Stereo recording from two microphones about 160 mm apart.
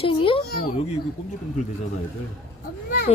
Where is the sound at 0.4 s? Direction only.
70° left (ahead or behind).